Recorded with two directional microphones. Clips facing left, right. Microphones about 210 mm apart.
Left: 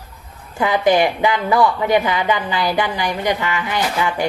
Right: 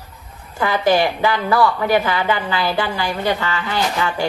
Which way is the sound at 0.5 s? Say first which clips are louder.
Left 1 dB; 20° left (ahead or behind).